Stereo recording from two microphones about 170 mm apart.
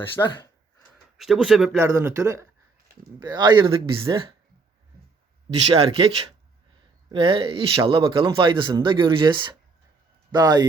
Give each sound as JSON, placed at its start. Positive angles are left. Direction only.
{"t": 0.2, "sound": "speech", "side_deg": 15}
{"t": 1.2, "sound": "speech", "side_deg": 0}
{"t": 1.7, "sound": "speech", "side_deg": -15}
{"t": 5.7, "sound": "speech", "side_deg": -35}
{"t": 7.1, "sound": "speech", "side_deg": -30}